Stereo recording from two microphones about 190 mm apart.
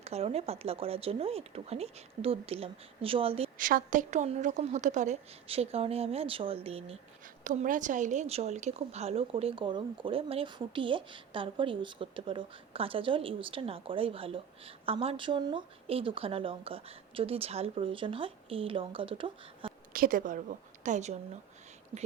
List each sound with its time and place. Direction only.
0.0 s speech: 35° right (ahead or behind)
3.6 s speech: 45° right (ahead or behind)
7.4 s speech: 45° right (ahead or behind); by 19.7 s 25° right (ahead or behind)
19.9 s a woman's voice: 45° right (ahead or behind)